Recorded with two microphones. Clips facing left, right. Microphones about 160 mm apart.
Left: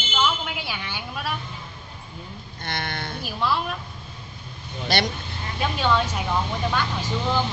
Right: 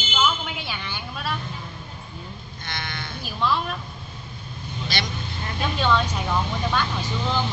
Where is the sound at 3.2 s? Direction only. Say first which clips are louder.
Right 1 dB; 5° left (ahead or behind).